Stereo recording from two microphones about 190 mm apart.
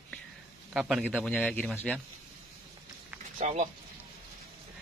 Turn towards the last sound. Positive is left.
turn(degrees=-35)  # may be behind; listen again after turning